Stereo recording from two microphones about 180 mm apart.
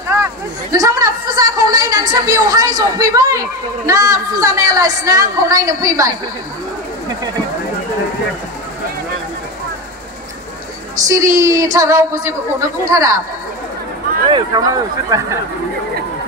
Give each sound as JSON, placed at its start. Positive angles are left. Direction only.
{"t": 0.1, "sound": "chatter", "side_deg": -15}
{"t": 11.0, "sound": "speech", "side_deg": -20}
{"t": 14.3, "sound": "speech", "side_deg": -20}